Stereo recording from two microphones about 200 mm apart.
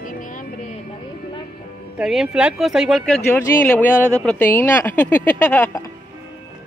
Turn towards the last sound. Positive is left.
turn(degrees=10)  # may be behind; listen again after turning